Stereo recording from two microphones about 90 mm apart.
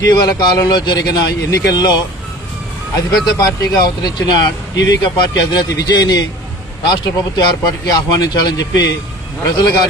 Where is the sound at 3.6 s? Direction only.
50° left (ahead or behind).